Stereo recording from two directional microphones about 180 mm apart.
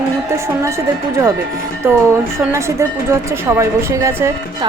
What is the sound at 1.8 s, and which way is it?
A woman's voice, 15° right (ahead or behind).